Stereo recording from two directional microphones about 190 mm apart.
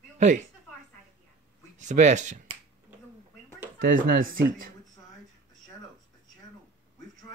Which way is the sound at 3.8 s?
50° right (ahead or behind).